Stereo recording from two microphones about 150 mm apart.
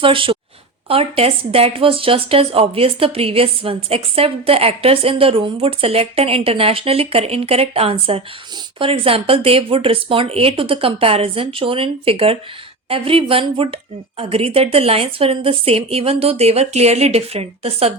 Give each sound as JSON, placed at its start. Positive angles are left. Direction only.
{"t": 0.0, "sound": "a woman's voice", "side_deg": -35}